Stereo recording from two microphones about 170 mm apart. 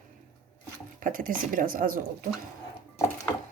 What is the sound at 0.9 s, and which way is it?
Speech, 55° right (ahead or behind).